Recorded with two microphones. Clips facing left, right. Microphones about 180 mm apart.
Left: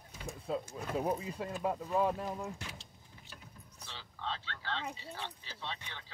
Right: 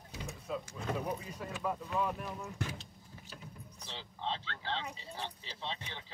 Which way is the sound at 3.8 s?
25° right (ahead or behind).